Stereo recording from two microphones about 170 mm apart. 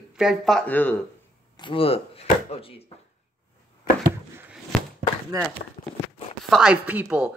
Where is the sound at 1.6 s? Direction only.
30° left (ahead or behind).